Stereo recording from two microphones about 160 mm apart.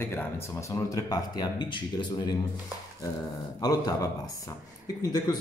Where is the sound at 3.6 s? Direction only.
25° left (ahead or behind).